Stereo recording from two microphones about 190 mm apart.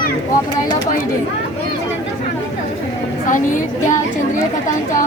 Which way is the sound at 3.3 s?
40° left (ahead or behind).